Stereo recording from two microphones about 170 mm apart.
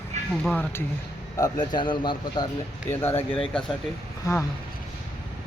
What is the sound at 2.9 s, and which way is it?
Speech, 15° left (ahead or behind).